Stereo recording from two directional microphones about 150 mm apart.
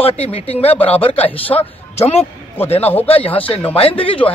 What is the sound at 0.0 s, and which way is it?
Speech, 40° left (ahead or behind).